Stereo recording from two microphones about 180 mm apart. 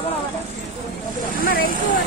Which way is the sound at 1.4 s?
55° left (ahead or behind).